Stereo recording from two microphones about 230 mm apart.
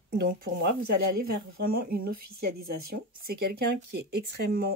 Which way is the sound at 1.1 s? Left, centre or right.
Right.